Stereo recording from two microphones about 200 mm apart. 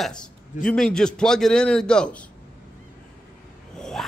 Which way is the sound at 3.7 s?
5° left (ahead or behind).